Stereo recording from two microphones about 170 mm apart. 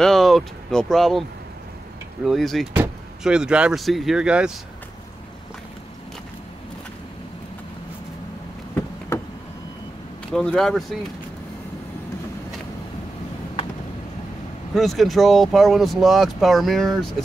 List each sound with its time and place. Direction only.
0.0 s speech: centre (ahead or behind)
2.2 s speech: centre (ahead or behind)
9.1 s vehicle: 15° left (ahead or behind)
10.3 s speech: 5° left (ahead or behind)
14.7 s speech: centre (ahead or behind)